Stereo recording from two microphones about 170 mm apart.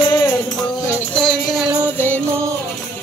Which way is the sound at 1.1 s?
Centre (ahead or behind).